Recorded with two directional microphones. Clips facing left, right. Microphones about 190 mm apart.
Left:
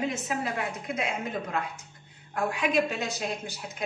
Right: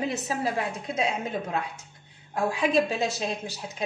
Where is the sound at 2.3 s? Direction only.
30° right (ahead or behind).